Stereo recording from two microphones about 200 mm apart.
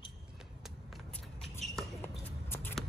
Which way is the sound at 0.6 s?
Centre (ahead or behind).